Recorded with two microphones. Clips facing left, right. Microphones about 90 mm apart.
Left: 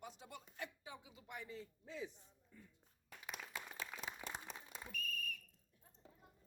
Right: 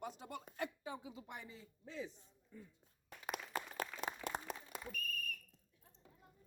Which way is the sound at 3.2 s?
55° right (ahead or behind).